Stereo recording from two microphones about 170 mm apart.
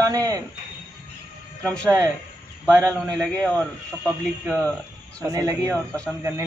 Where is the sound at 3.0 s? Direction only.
5° left (ahead or behind).